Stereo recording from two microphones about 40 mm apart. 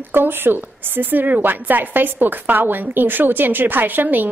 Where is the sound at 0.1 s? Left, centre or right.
Right.